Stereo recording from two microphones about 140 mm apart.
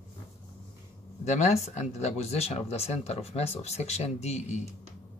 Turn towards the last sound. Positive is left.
turn(degrees=50)  # may be behind; listen again after turning